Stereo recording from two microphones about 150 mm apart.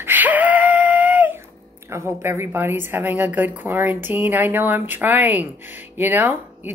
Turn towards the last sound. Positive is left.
turn(degrees=-15)  # may be behind; listen again after turning